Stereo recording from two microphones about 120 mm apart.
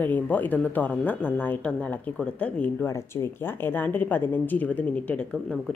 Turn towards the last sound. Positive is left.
turn(degrees=10)  # may be behind; listen again after turning